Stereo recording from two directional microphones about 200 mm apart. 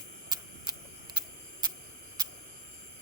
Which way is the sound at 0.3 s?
20° right (ahead or behind).